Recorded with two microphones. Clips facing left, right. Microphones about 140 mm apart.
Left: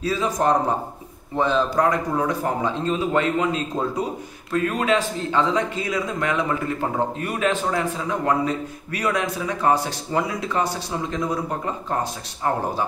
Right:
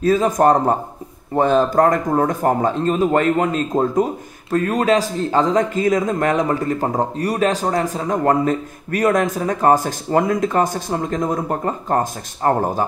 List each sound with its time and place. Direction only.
0.0 s a man's voice: 50° right (ahead or behind)